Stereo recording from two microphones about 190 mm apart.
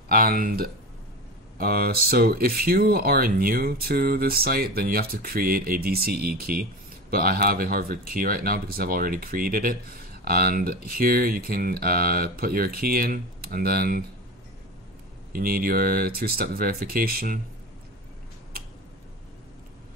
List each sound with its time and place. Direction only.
0.1 s speech: 50° right (ahead or behind)
15.3 s speech: 50° right (ahead or behind)